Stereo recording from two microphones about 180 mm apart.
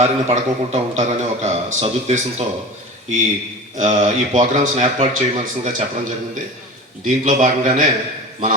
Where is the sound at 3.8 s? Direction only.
40° right (ahead or behind).